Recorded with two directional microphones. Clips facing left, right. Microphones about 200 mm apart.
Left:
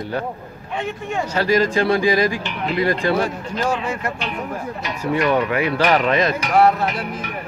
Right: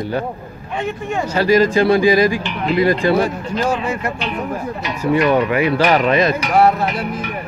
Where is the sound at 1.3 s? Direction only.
5° right (ahead or behind).